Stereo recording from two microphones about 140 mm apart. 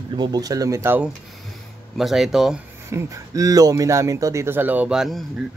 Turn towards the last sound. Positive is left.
turn(degrees=0)  # may be behind; listen again after turning